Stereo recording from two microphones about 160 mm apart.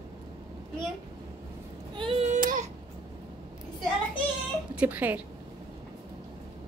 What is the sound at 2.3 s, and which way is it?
Baby cry, 55° right (ahead or behind).